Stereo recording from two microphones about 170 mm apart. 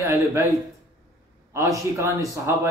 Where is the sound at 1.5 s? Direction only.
15° right (ahead or behind).